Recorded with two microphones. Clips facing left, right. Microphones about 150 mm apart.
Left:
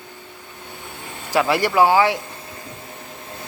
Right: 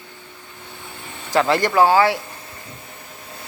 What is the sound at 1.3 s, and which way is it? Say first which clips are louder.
Speech: right 1 dB; 10° left (ahead or behind).